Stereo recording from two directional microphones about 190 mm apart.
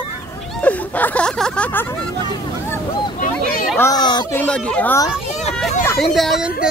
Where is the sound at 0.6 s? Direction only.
10° left (ahead or behind).